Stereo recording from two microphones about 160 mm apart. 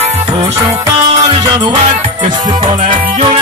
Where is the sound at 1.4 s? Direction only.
25° right (ahead or behind).